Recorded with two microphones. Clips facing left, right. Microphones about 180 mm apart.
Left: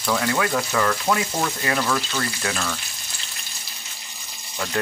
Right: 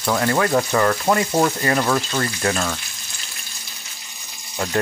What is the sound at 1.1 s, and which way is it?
Frying, 25° right (ahead or behind).